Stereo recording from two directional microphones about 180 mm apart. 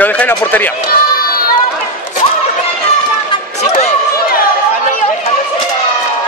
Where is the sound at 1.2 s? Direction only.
55° left (ahead or behind).